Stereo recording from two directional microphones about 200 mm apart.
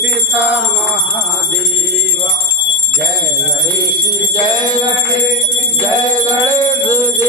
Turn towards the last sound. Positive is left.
turn(degrees=-15)  # may be behind; listen again after turning